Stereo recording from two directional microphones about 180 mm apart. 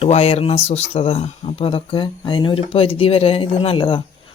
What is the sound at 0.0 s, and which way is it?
Speech, 35° left (ahead or behind).